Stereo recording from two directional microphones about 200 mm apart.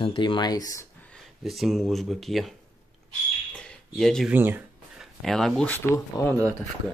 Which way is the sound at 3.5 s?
5° left (ahead or behind).